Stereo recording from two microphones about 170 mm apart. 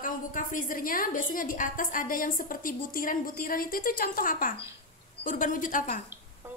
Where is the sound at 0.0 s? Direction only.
50° left (ahead or behind).